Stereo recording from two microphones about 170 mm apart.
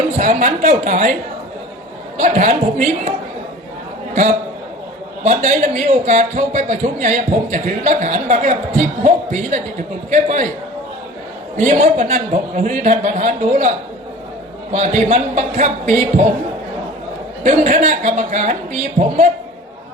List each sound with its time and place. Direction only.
0.2 s a man's voice: 45° right (ahead or behind)
2.1 s a man's voice: 45° right (ahead or behind)
5.2 s a man's voice: 45° right (ahead or behind)
11.5 s a man's voice: 45° right (ahead or behind)
17.4 s a man's voice: 50° right (ahead or behind)